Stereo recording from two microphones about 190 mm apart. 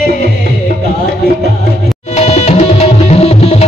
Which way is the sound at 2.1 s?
35° left (ahead or behind).